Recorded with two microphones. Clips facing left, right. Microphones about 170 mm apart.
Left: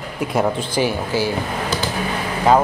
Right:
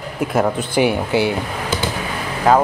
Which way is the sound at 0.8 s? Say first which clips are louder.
Right 4 dB; 20° right (ahead or behind).